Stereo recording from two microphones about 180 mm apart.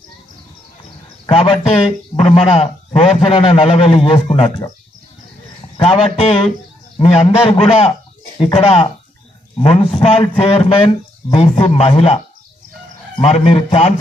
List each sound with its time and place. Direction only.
0.9 s a sound: 30° left (ahead or behind)
2.1 s a man's voice: 35° left (ahead or behind)
5.7 s a man's voice: 35° left (ahead or behind)
13.2 s a man's voice: 35° left (ahead or behind)